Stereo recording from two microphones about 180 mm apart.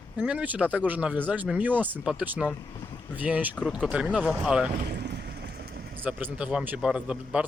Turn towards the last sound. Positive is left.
turn(degrees=-5)  # may be behind; listen again after turning